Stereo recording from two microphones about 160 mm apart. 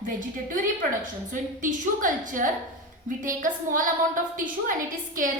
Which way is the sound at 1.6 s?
55° right (ahead or behind).